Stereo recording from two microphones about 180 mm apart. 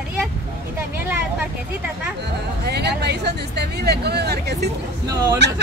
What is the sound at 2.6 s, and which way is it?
Speech, 65° right (ahead or behind).